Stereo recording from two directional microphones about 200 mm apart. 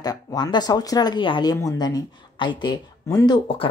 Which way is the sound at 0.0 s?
20° left (ahead or behind).